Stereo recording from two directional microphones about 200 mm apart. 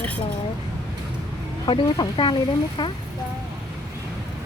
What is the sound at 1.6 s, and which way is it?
Speech, 25° left (ahead or behind).